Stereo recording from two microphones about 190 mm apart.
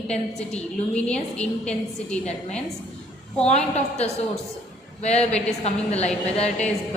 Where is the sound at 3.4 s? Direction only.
35° left (ahead or behind).